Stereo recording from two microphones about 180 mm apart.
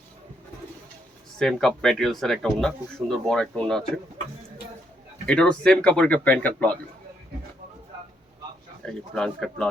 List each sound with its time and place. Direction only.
1.4 s speech: centre (ahead or behind)
5.2 s speech: 5° left (ahead or behind)
8.8 s speech: 5° left (ahead or behind)